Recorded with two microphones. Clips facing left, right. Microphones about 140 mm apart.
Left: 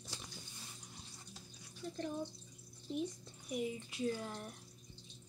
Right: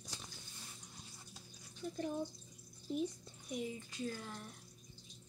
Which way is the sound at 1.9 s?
10° right (ahead or behind).